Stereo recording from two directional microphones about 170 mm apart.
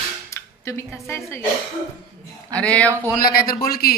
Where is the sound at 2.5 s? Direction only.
5° left (ahead or behind).